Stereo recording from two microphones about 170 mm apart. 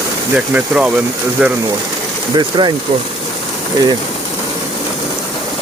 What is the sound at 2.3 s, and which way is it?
Speech, 25° right (ahead or behind).